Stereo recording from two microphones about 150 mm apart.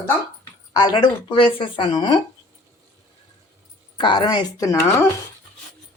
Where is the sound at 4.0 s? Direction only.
30° left (ahead or behind).